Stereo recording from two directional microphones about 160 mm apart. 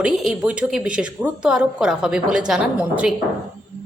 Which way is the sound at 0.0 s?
5° right (ahead or behind).